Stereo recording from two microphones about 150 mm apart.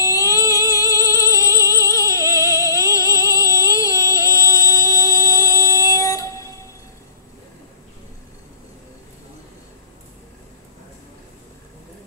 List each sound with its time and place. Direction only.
0.0 s music: 20° left (ahead or behind)